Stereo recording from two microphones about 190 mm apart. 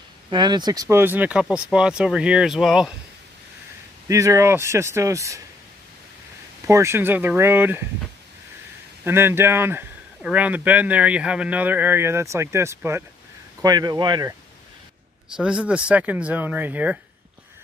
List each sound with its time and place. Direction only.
0.3 s speech: 25° right (ahead or behind); by 2.9 s 5° right (ahead or behind)
4.1 s speech: 15° right (ahead or behind)
6.7 s speech: 15° right (ahead or behind)
9.0 s speech: 10° right (ahead or behind)
15.3 s speech: 5° right (ahead or behind)